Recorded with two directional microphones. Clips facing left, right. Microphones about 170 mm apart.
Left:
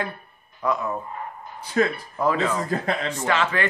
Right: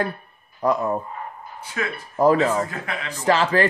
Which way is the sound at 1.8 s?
35° left (ahead or behind).